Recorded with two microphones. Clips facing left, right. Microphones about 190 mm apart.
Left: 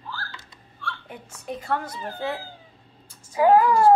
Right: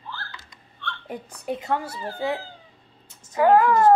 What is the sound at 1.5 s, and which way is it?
Speech, 20° right (ahead or behind).